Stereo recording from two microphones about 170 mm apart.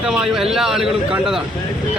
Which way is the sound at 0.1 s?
5° right (ahead or behind).